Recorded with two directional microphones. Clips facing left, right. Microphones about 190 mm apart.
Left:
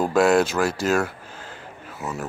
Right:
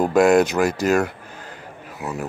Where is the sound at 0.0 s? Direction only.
15° right (ahead or behind).